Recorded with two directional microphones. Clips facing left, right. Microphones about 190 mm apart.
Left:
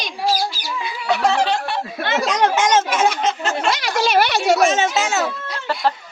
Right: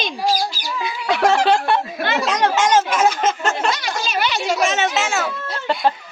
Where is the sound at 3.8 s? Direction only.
65° left (ahead or behind).